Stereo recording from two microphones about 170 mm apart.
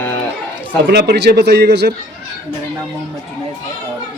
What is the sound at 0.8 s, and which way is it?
Speech, 80° right.